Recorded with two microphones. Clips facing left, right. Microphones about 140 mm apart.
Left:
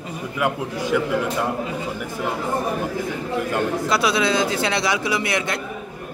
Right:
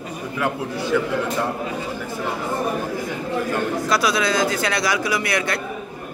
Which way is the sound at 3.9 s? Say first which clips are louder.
Even; 25° left (ahead or behind).